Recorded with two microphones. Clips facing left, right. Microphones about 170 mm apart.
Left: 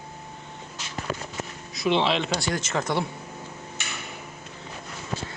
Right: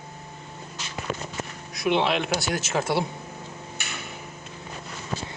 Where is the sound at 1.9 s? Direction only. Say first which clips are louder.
Even; 5° right (ahead or behind).